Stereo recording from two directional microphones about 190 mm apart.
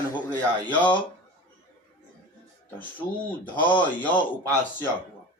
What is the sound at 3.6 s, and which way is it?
Speech, 10° left (ahead or behind).